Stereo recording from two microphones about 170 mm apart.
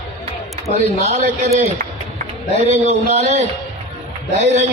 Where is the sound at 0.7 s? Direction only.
40° right (ahead or behind).